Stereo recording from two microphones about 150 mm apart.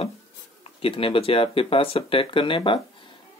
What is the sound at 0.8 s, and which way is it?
Speech, 35° left (ahead or behind).